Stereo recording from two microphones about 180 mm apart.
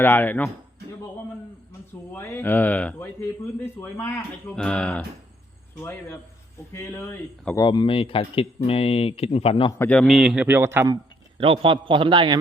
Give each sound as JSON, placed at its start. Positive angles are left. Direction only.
{"t": 0.0, "sound": "speech", "side_deg": 10}
{"t": 2.1, "sound": "a man's voice", "side_deg": 10}
{"t": 6.7, "sound": "speech", "side_deg": 10}
{"t": 7.6, "sound": "speech", "side_deg": 25}
{"t": 9.7, "sound": "a man's voice", "side_deg": 10}
{"t": 11.3, "sound": "a man's voice", "side_deg": -30}